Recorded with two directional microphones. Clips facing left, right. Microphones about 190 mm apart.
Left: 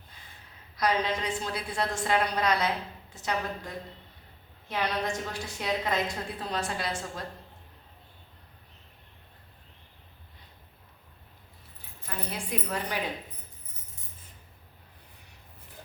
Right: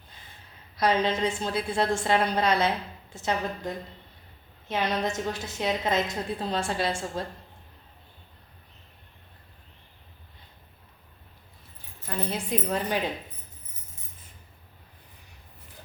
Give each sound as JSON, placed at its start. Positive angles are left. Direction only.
{"t": 0.8, "sound": "a woman's voice", "side_deg": -25}
{"t": 4.7, "sound": "a woman's voice", "side_deg": -25}
{"t": 12.0, "sound": "a woman's voice", "side_deg": -25}